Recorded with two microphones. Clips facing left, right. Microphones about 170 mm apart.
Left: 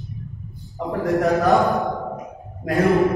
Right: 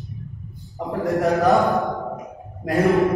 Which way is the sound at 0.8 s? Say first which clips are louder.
Left 1 dB; centre (ahead or behind).